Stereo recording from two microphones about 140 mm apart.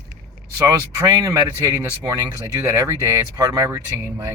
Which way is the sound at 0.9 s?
25° right (ahead or behind).